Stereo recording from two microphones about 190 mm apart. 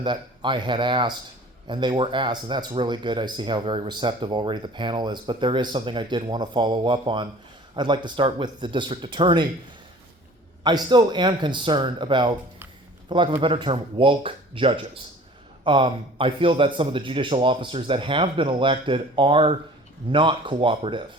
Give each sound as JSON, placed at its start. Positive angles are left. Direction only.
{"t": 0.0, "sound": "speech", "side_deg": -25}
{"t": 10.6, "sound": "a man's voice", "side_deg": -20}